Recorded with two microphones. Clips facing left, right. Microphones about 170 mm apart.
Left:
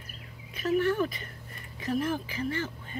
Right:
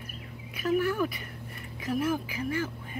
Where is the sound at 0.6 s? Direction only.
10° right (ahead or behind).